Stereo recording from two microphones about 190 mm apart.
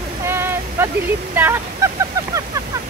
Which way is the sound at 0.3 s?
10° right (ahead or behind).